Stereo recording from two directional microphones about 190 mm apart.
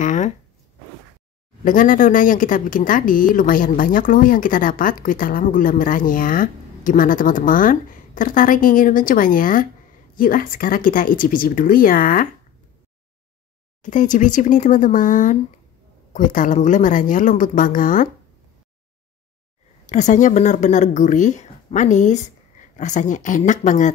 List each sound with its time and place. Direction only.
0.0 s speech: 40° left (ahead or behind)
1.6 s speech: 45° left (ahead or behind)
13.8 s speech: 40° left (ahead or behind)
19.9 s a woman's voice: 40° left (ahead or behind)